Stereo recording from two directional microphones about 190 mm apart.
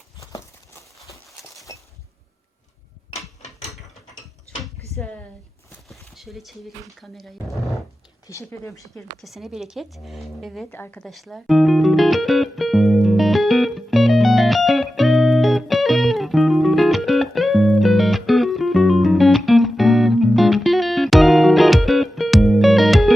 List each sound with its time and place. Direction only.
0.2 s a sound: 15° left (ahead or behind)
1.7 s breaking: 20° left (ahead or behind)
3.7 s mechanisms: centre (ahead or behind)
4.6 s a sound: centre (ahead or behind)
6.1 s speech: centre (ahead or behind)
8.3 s speech: 15° left (ahead or behind)
9.2 s speech: centre (ahead or behind)
10.7 s music: 10° left (ahead or behind)